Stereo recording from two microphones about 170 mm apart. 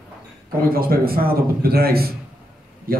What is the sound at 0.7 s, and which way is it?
A man's voice, 60° right (ahead or behind).